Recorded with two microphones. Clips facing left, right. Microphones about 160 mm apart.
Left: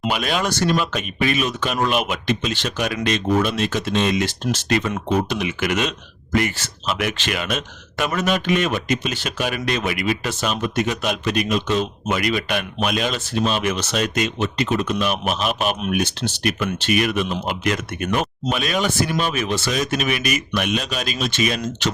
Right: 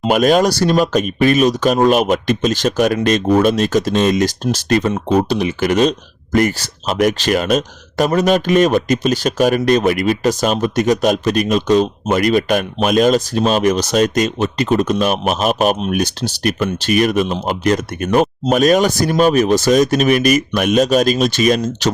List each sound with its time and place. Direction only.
0.1 s speech: 45° right (ahead or behind)